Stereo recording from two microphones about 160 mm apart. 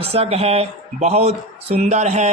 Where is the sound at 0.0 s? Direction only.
40° right (ahead or behind).